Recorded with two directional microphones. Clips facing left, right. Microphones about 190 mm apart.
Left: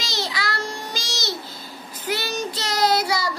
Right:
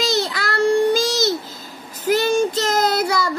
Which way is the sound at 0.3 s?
55° right (ahead or behind).